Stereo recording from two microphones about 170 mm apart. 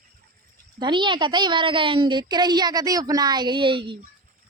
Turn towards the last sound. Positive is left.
turn(degrees=-30)  # may be behind; listen again after turning